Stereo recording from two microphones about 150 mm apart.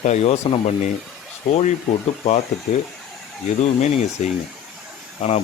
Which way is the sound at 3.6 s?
50° left (ahead or behind).